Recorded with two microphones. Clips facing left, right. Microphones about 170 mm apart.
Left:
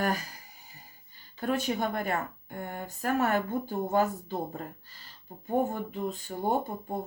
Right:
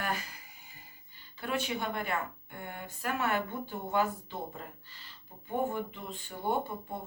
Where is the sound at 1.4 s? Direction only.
40° left (ahead or behind).